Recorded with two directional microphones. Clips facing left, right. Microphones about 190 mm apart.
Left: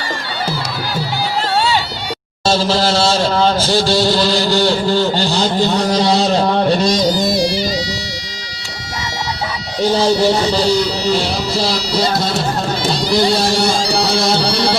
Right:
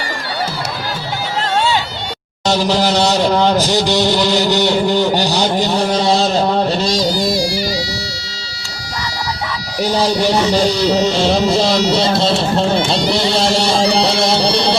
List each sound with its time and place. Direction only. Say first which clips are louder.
2.5 s a sound: even; 15° right (ahead or behind)
7.0 s music: left 1 dB; 20° left (ahead or behind)
14.0 s music: right 1 dB; 25° right (ahead or behind)